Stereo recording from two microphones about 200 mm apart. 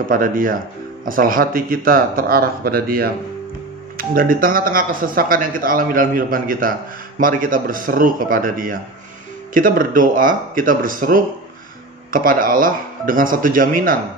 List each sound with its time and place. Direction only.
0.1 s speech: 45° right (ahead or behind)